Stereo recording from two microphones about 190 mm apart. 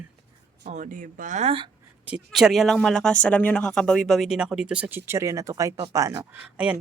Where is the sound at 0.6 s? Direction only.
40° right (ahead or behind).